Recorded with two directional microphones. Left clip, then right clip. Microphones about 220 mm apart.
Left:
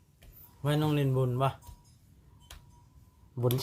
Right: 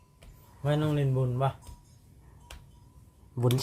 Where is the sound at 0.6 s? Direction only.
40° left (ahead or behind).